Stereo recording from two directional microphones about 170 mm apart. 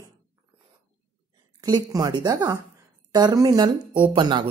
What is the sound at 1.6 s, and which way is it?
Speech, 20° right (ahead or behind).